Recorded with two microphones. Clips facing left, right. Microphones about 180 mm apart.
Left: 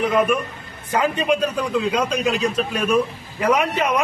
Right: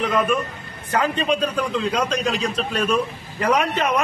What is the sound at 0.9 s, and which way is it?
A man's voice, 10° left (ahead or behind).